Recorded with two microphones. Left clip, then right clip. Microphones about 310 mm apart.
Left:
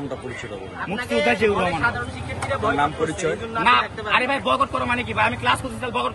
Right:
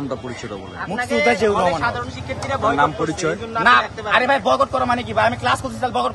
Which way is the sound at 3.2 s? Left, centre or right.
Right.